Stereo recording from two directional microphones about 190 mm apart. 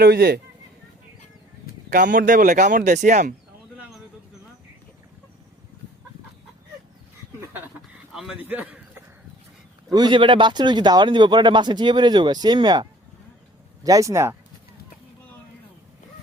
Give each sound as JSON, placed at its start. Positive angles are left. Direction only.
{"t": 0.0, "sound": "speech", "side_deg": -55}
{"t": 1.9, "sound": "speech", "side_deg": -45}
{"t": 3.8, "sound": "a sound", "side_deg": 0}
{"t": 8.1, "sound": "a man's voice", "side_deg": -5}
{"t": 9.9, "sound": "speech", "side_deg": -25}